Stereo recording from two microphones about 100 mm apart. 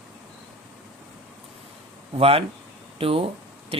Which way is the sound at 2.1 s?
75° right (ahead or behind).